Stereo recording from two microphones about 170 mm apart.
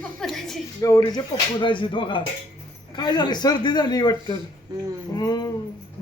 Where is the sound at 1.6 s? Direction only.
30° left (ahead or behind).